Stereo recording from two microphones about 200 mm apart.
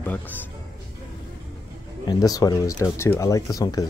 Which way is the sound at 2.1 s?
20° left (ahead or behind).